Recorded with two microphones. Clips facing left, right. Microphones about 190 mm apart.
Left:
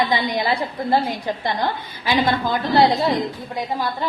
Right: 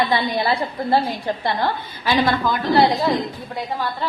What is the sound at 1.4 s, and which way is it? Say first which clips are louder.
Speech: right 1 dB; 15° left (ahead or behind).